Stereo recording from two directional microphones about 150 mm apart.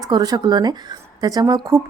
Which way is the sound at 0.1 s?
25° right (ahead or behind).